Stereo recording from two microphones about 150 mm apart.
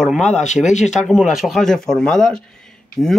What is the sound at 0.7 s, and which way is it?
Speech, 50° left (ahead or behind).